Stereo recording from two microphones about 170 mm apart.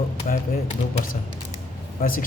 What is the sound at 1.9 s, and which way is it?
Speech, 55° left (ahead or behind).